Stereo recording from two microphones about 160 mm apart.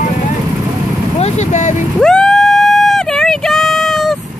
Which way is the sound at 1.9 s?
5° left (ahead or behind).